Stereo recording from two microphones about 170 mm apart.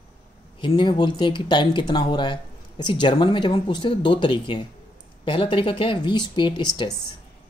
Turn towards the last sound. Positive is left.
turn(degrees=25)  # may be behind; listen again after turning